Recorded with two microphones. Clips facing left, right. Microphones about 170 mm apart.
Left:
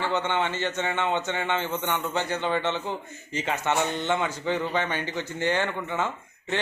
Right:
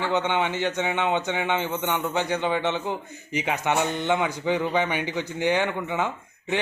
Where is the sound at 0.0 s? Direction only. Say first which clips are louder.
Right 2 dB; 15° right (ahead or behind).